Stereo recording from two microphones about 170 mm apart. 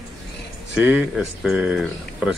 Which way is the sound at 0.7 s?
5° right (ahead or behind).